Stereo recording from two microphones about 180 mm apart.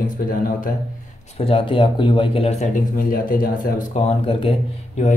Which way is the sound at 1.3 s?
30° left (ahead or behind).